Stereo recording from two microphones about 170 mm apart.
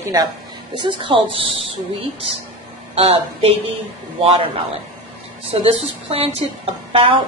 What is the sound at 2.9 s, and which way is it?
Speech, 35° right (ahead or behind).